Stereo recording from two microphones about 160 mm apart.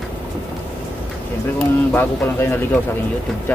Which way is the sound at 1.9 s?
15° left (ahead or behind).